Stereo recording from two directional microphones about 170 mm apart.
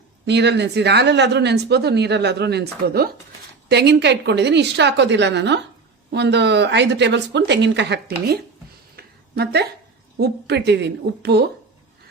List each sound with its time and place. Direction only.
0.3 s a woman's voice: 85° right; by 3.1 s 65° right (ahead or behind)
3.7 s speech: 80° right
9.0 s a sound: 70° right (ahead or behind)
10.2 s a woman's voice: 75° right (ahead or behind)